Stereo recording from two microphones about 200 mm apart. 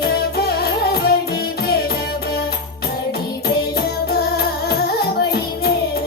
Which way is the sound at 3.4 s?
50° left (ahead or behind).